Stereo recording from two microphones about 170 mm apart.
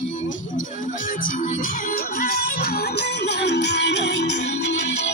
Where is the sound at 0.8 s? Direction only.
50° left (ahead or behind).